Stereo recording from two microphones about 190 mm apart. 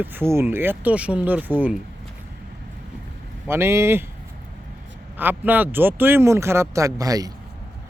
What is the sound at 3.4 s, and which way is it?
Speech, 15° right (ahead or behind).